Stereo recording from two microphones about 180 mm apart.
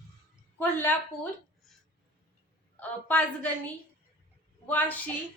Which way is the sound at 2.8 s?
10° left (ahead or behind).